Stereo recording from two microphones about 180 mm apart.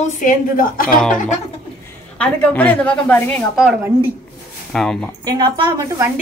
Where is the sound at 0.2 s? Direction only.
50° left (ahead or behind).